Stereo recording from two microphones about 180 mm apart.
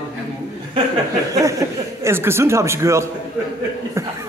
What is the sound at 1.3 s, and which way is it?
Speech, 20° right (ahead or behind).